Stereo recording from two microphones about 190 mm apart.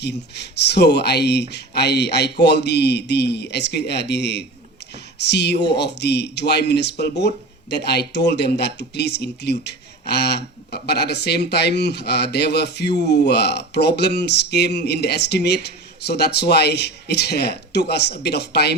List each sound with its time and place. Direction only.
0.0 s speech: 60° left (ahead or behind)